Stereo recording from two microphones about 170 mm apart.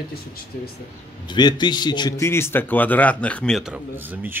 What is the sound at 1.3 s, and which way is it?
A man's voice, 25° left (ahead or behind).